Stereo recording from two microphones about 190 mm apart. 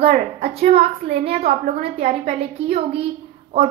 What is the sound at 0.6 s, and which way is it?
A woman's voice, 35° right (ahead or behind).